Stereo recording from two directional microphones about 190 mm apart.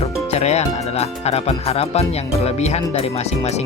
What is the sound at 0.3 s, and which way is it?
Speech, 35° left (ahead or behind).